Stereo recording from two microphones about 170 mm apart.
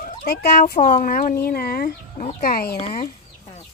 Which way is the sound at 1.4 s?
65° left (ahead or behind).